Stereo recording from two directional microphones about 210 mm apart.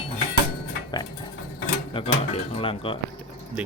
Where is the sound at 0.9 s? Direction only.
20° left (ahead or behind).